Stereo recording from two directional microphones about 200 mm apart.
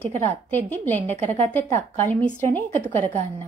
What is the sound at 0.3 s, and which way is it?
A woman's voice, 10° left (ahead or behind).